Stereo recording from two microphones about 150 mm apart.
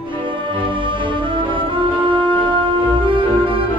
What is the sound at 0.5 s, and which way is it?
Music, 35° right (ahead or behind).